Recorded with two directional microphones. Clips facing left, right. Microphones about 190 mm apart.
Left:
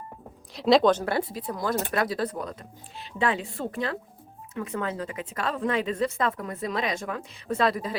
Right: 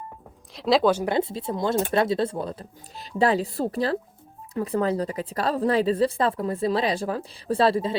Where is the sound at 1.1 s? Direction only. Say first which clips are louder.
Right 4 dB; 25° right (ahead or behind).